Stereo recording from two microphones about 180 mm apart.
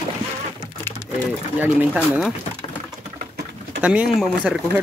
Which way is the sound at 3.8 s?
5° right (ahead or behind).